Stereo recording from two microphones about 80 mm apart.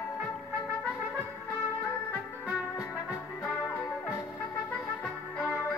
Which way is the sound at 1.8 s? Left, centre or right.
Centre.